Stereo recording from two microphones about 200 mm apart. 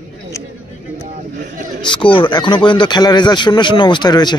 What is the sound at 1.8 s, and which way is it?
Speech, 25° left (ahead or behind).